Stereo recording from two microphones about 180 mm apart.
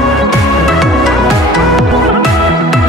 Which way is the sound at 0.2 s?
Centre (ahead or behind).